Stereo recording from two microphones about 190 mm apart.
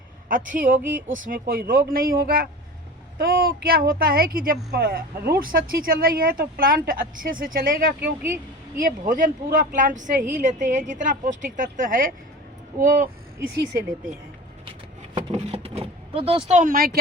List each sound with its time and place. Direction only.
0.3 s speech: 45° right (ahead or behind)
0.8 s speech: 10° right (ahead or behind)
1.1 s speech: 45° right (ahead or behind)
8.2 s a woman's voice: 10° right (ahead or behind)
9.0 s speech: 45° right (ahead or behind)
15.1 s vehicle: 30° right (ahead or behind); by 17.0 s 50° right (ahead or behind)